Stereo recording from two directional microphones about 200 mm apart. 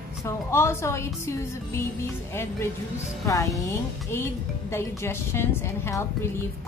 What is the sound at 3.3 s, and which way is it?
A woman's voice, 15° left (ahead or behind).